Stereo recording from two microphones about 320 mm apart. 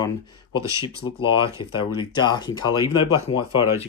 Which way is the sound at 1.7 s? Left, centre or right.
Centre.